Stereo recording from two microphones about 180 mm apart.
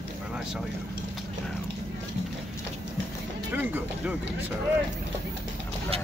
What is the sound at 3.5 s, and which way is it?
Speech, 10° right (ahead or behind).